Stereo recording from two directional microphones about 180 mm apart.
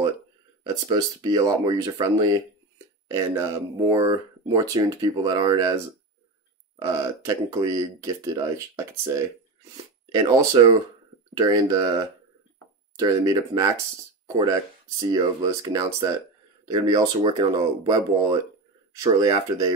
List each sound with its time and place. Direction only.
0.8 s speech: 20° right (ahead or behind)
6.8 s speech: 20° right (ahead or behind)
10.6 s speech: 25° right (ahead or behind)
12.9 s speech: 20° right (ahead or behind)